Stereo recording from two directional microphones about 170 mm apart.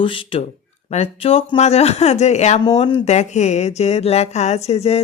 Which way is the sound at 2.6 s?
25° left (ahead or behind).